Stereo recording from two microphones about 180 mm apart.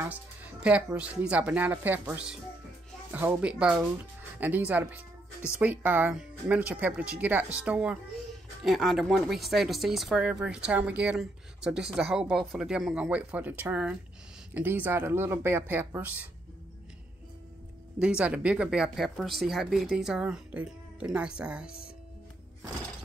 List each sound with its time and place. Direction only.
0.0 s speech: 10° right (ahead or behind)
17.9 s speech: 5° right (ahead or behind)
21.6 s speech: 55° left (ahead or behind)